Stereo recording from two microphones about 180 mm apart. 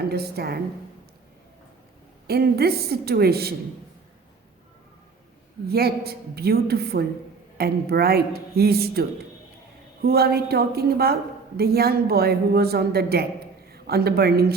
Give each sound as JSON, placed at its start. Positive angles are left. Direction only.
{"t": 0.1, "sound": "a woman's voice", "side_deg": -60}
{"t": 2.2, "sound": "a woman's voice", "side_deg": -60}
{"t": 5.6, "sound": "a woman's voice", "side_deg": -60}